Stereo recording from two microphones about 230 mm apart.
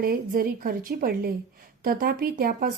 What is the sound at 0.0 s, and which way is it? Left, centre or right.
A woman's voice, right.